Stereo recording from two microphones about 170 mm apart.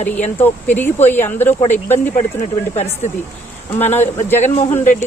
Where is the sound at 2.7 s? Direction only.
40° left (ahead or behind).